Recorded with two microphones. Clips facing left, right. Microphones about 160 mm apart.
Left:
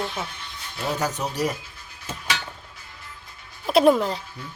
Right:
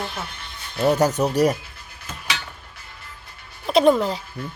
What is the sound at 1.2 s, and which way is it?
Speech, 50° right (ahead or behind).